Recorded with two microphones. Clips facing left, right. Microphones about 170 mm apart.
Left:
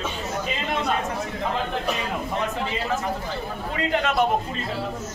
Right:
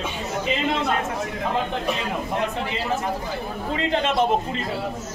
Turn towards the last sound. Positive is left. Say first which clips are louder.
# right 1 dB
turn(degrees=-25)  # may be behind; listen again after turning